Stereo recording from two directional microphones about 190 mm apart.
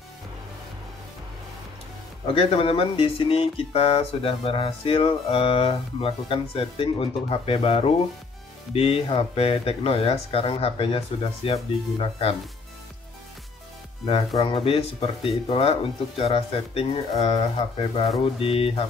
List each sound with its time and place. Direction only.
2.2 s speech: 30° left (ahead or behind)
14.0 s speech: 30° left (ahead or behind)